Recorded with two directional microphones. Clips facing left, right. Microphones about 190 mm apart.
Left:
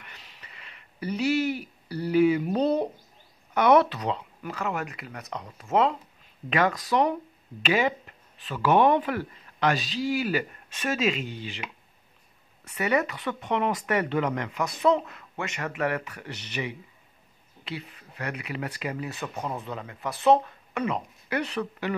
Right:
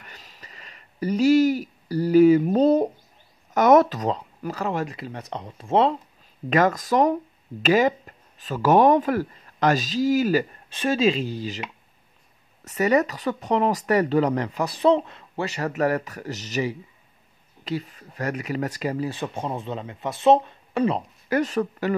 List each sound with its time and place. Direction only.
0.0 s a sound: 40° right (ahead or behind)
3.5 s speech: 45° right (ahead or behind)
6.5 s speech: 45° right (ahead or behind)
12.6 s speech: 40° right (ahead or behind)